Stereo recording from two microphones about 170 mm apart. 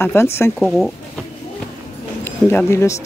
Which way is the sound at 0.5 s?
Centre (ahead or behind).